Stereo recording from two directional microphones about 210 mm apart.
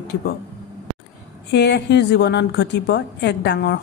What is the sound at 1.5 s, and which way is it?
A woman's voice, 55° left (ahead or behind).